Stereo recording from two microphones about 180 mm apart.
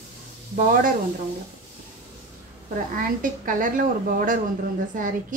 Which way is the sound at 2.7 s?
50° right (ahead or behind).